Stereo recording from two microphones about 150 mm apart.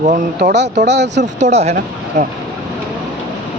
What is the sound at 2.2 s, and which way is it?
Speech, 55° right (ahead or behind).